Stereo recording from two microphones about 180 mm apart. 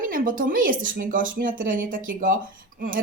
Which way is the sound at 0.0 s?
50° right (ahead or behind).